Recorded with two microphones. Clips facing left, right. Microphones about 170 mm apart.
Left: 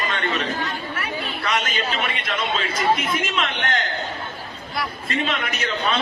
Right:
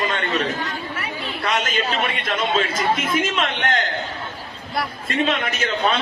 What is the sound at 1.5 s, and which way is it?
Speech, 45° right (ahead or behind).